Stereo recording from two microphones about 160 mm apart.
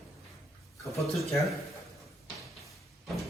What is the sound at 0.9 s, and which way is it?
Speech, centre (ahead or behind).